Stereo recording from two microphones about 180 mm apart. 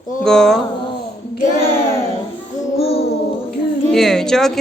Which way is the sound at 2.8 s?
35° left (ahead or behind).